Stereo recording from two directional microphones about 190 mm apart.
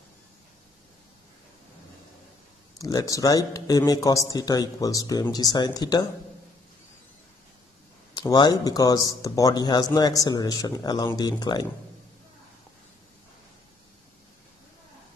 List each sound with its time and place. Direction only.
2.8 s a man's voice: 20° left (ahead or behind)
8.1 s a man's voice: 20° left (ahead or behind)